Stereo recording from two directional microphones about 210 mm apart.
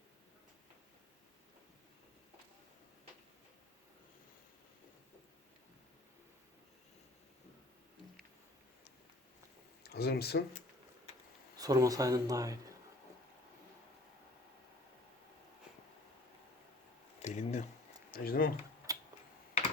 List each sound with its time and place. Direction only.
9.8 s speech: 50° left (ahead or behind)
11.5 s speech: 15° right (ahead or behind)
17.2 s a sound: 35° left (ahead or behind)
18.1 s speech: 45° left (ahead or behind)
18.9 s computer keyboard: 15° right (ahead or behind)